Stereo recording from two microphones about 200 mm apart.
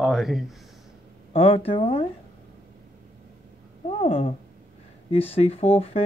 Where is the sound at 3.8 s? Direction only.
30° left (ahead or behind).